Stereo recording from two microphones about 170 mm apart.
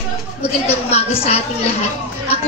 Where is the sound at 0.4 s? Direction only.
35° left (ahead or behind).